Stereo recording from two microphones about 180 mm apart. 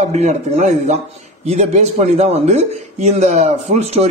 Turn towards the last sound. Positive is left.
turn(degrees=-35)  # may be behind; listen again after turning